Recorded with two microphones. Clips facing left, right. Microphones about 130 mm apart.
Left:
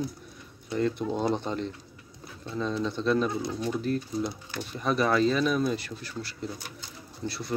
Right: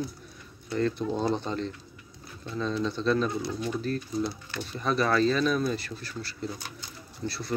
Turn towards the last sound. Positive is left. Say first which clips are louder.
# even
turn(degrees=15)  # may be behind; listen again after turning